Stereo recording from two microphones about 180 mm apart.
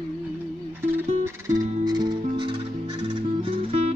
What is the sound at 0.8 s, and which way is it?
Music, 15° right (ahead or behind).